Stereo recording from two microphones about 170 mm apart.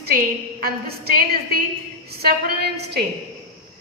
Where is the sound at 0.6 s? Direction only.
65° right (ahead or behind).